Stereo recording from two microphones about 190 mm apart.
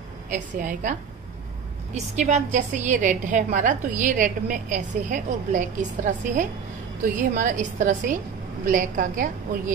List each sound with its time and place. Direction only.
0.3 s a woman's voice: 40° right (ahead or behind)
2.0 s a woman's voice: 35° right (ahead or behind)